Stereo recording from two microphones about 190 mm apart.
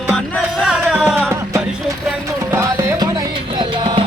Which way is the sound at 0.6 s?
Centre (ahead or behind).